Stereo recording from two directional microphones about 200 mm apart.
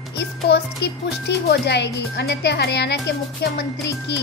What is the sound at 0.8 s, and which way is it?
Speech, 55° left (ahead or behind).